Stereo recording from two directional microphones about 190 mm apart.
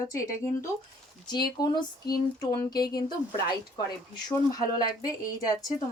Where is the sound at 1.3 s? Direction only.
20° left (ahead or behind).